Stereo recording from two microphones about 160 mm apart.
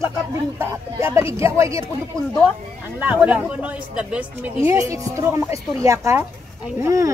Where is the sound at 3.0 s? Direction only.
10° right (ahead or behind).